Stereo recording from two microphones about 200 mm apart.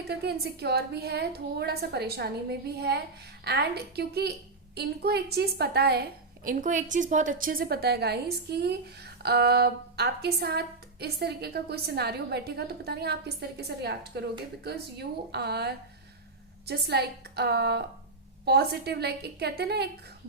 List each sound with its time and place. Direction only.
0.1 s a woman's voice: 55° right (ahead or behind)